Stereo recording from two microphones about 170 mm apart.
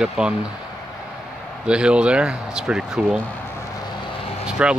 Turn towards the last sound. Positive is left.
turn(degrees=-5)  # may be behind; listen again after turning